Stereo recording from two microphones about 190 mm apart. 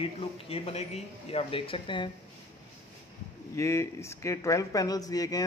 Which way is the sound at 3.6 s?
15° left (ahead or behind).